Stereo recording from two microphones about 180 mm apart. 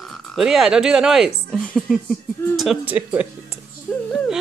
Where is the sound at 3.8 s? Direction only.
5° left (ahead or behind).